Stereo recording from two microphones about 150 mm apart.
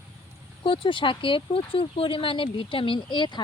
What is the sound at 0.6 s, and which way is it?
Speech, 35° left (ahead or behind).